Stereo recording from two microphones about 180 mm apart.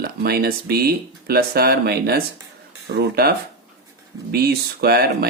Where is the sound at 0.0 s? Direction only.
60° right (ahead or behind).